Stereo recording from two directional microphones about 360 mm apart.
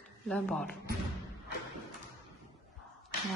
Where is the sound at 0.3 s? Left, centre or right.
Centre.